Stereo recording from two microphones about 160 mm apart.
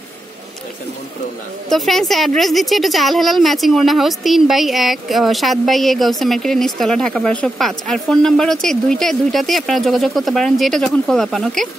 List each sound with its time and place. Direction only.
1.7 s a woman's voice: centre (ahead or behind)